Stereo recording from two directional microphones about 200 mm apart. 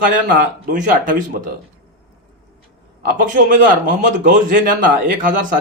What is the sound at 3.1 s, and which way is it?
Speech, 40° right (ahead or behind).